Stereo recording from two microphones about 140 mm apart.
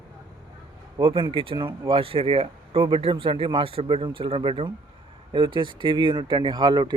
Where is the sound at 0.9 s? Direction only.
35° right (ahead or behind).